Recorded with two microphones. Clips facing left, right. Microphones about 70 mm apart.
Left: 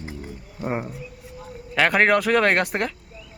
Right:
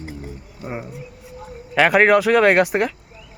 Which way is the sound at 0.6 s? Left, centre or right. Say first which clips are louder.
Left 4 dB; left.